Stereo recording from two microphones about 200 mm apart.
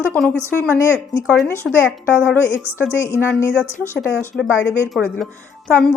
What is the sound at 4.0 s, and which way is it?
A woman's voice, centre (ahead or behind).